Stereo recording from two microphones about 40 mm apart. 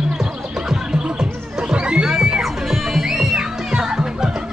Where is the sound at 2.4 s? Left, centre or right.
Centre.